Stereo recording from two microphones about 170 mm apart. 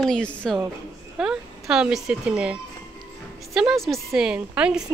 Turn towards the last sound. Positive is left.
turn(degrees=-5)  # may be behind; listen again after turning